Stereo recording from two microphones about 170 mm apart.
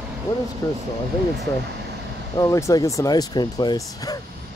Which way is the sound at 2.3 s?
20° left (ahead or behind).